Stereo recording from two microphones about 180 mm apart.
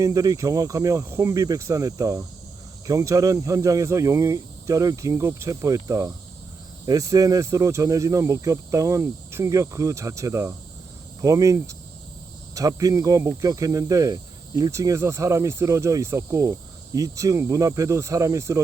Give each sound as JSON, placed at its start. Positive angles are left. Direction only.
{"t": 0.0, "sound": "speech", "side_deg": -20}